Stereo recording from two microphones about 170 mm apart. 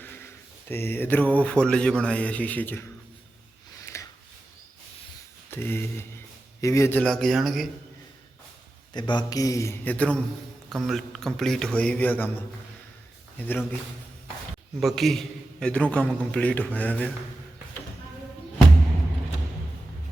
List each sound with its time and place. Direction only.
0.7 s speech: 10° left (ahead or behind)
3.9 s a sound: 15° left (ahead or behind)
5.5 s a sound: 15° left (ahead or behind)
6.6 s speech: 20° left (ahead or behind)
7.0 s speech: 5° left (ahead or behind)
8.9 s a man's voice: 25° left (ahead or behind); by 12.3 s 10° left (ahead or behind)
13.3 s speech: 10° left (ahead or behind)
14.8 s speech: centre (ahead or behind)